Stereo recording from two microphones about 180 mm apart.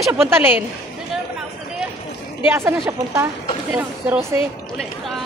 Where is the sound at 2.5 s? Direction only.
15° right (ahead or behind).